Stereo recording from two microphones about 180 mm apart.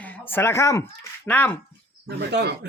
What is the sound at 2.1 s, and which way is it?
Speech, 70° right (ahead or behind).